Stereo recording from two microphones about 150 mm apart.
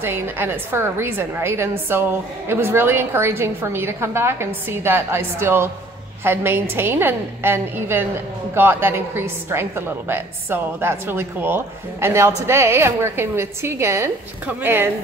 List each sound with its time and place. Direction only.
0.0 s a woman's voice: 15° right (ahead or behind)